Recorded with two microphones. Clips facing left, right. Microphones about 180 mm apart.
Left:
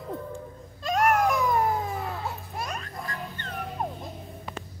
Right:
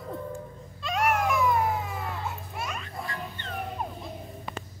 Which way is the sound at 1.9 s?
40° left (ahead or behind).